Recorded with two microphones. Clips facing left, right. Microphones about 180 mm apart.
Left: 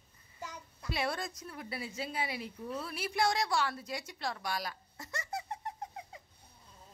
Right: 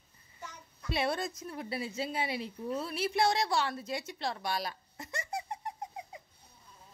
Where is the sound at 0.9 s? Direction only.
25° right (ahead or behind).